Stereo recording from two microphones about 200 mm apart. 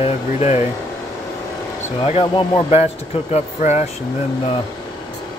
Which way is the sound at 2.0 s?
25° left (ahead or behind).